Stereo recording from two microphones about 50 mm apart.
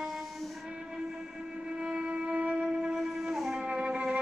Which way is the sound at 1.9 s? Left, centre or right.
Right.